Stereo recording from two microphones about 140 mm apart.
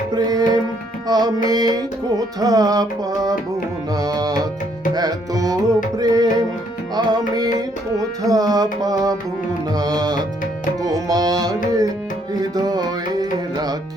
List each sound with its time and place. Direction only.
0.1 s tabla: 30° right (ahead or behind)
1.5 s music: 30° right (ahead or behind)
3.9 s music: 25° right (ahead or behind)